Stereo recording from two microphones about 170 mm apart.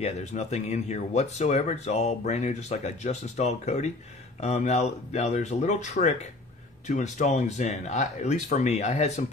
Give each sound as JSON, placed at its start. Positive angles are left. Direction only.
{"t": 0.0, "sound": "speech", "side_deg": 40}